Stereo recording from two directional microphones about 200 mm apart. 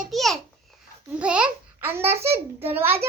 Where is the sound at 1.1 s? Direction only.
5° right (ahead or behind).